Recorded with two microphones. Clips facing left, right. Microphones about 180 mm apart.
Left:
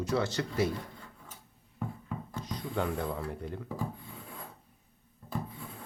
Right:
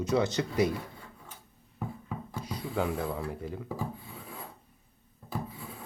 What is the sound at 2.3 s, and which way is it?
Speech, 10° right (ahead or behind).